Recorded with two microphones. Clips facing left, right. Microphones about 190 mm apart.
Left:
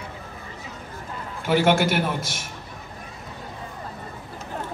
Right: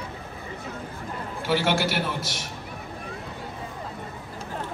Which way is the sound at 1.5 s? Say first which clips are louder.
Left 5 dB; 50° left (ahead or behind).